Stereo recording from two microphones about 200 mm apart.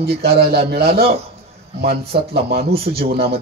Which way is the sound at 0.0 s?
50° right (ahead or behind).